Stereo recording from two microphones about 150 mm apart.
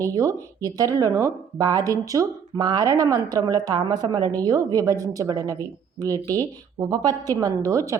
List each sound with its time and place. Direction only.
0.0 s speech: 25° right (ahead or behind)